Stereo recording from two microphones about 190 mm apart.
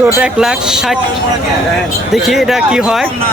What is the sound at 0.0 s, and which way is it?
Speech, 5° right (ahead or behind).